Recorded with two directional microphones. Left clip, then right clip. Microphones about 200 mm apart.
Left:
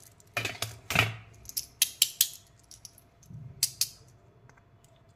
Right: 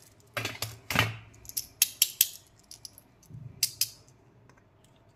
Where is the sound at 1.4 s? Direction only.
5° left (ahead or behind).